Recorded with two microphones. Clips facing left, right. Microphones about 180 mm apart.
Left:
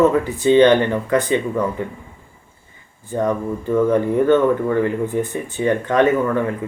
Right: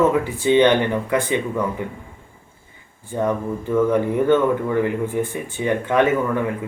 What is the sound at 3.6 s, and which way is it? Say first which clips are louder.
Speech: left 2 dB; 15° right (ahead or behind).